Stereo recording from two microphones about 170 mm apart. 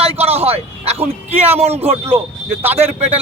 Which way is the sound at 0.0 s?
35° right (ahead or behind).